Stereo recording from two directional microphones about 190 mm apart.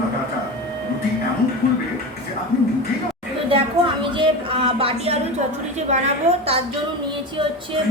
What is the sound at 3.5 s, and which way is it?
A woman's voice, 25° right (ahead or behind).